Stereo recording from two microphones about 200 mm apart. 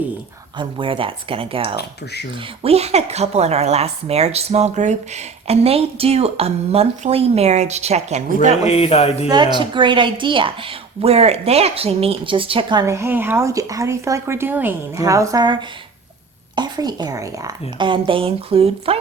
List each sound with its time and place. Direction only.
0.6 s a woman's voice: 25° right (ahead or behind)
8.6 s a sound: 30° left (ahead or behind)
9.3 s a woman's voice: 20° right (ahead or behind)
16.6 s a woman's voice: 20° right (ahead or behind)